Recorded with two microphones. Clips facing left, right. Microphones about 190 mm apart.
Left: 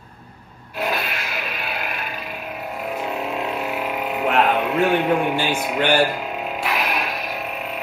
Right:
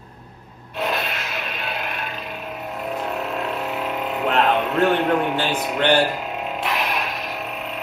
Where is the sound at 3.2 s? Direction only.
10° left (ahead or behind).